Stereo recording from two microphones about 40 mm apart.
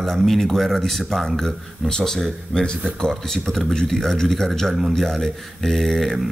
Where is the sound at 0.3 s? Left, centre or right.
Centre.